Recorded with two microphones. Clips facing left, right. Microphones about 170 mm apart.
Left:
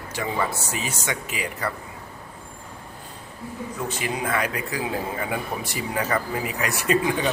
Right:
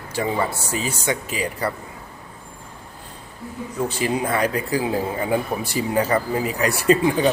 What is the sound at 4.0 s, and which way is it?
A man's voice, 35° right (ahead or behind).